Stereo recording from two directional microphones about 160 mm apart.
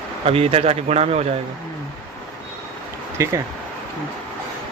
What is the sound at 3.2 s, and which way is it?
Speech, 15° right (ahead or behind).